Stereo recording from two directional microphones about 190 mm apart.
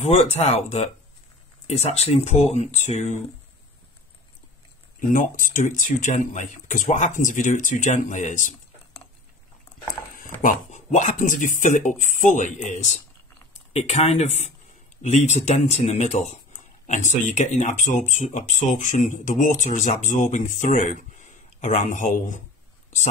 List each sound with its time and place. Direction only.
0.0 s speech: 35° left (ahead or behind)
5.0 s speech: 45° left (ahead or behind)
10.4 s speech: 40° left (ahead or behind)